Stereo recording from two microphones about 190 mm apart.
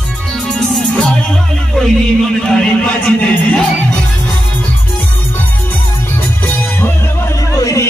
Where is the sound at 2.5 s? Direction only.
5° left (ahead or behind).